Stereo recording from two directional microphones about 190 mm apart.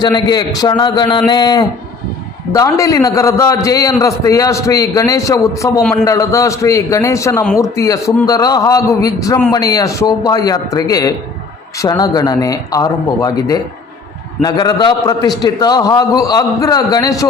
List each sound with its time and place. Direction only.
0.0 s a man's voice: 20° left (ahead or behind)
5.8 s a man's voice: 5° left (ahead or behind)
6.1 s a man's voice: 15° left (ahead or behind)